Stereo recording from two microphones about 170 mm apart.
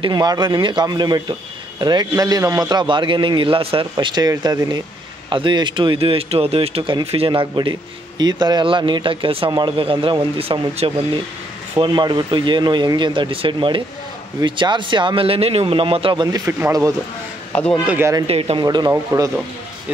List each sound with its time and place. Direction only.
0.0 s a man's voice: 25° right (ahead or behind)
11.8 s a man's voice: 25° right (ahead or behind)
17.5 s speech: 10° left (ahead or behind)
17.8 s speech: 15° right (ahead or behind)
18.2 s a man's voice: 35° right (ahead or behind); by 19.3 s 20° right (ahead or behind)